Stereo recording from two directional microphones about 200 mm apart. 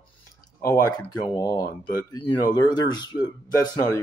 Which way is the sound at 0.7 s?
15° left (ahead or behind).